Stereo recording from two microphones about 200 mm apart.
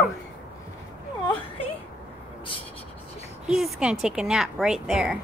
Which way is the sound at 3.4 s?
Centre (ahead or behind).